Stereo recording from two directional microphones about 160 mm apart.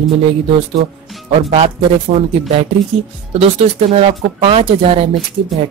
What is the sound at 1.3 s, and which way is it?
Speech, 40° right (ahead or behind).